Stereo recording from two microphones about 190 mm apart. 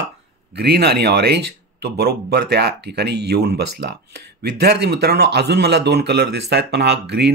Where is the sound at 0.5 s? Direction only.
60° right (ahead or behind).